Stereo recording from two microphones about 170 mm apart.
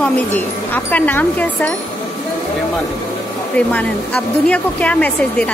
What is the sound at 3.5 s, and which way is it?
Speech, 5° left (ahead or behind).